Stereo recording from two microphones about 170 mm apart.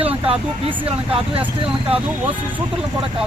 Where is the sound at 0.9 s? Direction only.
35° right (ahead or behind).